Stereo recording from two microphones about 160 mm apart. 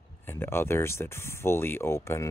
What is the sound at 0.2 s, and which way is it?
Speech, 15° left (ahead or behind).